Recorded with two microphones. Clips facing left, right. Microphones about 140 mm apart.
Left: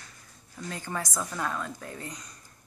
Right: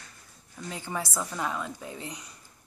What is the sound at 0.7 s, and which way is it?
A woman's voice, 10° right (ahead or behind).